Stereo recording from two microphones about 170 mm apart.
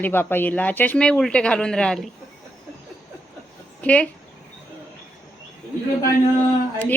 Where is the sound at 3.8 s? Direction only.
10° left (ahead or behind).